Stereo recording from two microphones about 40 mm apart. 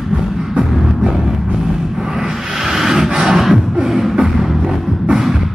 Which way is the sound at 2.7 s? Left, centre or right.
Centre.